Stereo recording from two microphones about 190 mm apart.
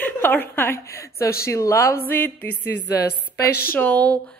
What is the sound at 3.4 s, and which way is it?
Speech, 55° left (ahead or behind).